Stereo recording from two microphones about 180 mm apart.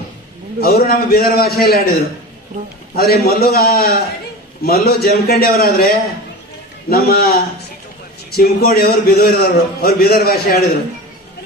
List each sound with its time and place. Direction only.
0.6 s a man's voice: 60° left (ahead or behind)